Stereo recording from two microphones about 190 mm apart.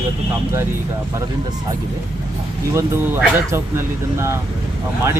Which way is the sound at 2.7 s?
10° right (ahead or behind).